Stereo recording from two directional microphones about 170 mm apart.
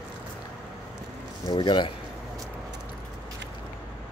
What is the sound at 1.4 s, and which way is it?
Speech, 25° left (ahead or behind).